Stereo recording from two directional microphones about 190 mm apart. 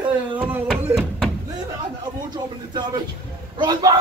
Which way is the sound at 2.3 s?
20° right (ahead or behind).